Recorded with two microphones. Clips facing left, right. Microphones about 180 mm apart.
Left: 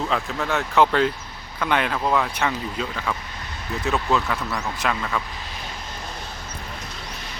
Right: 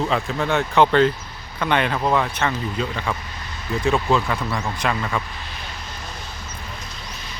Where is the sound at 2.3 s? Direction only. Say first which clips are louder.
Right 2 dB; 10° left (ahead or behind).